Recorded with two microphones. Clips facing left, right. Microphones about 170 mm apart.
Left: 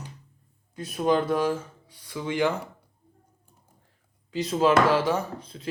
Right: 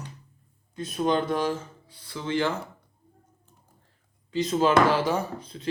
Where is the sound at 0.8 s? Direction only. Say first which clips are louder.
Left 1 dB; 5° left (ahead or behind).